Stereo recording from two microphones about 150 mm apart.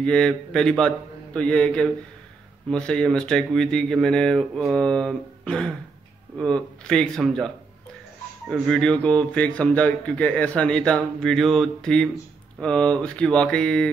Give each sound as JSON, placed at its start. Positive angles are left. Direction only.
{"t": 0.0, "sound": "speech", "side_deg": 5}